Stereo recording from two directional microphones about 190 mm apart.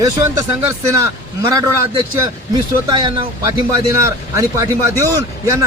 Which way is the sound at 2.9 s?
20° right (ahead or behind).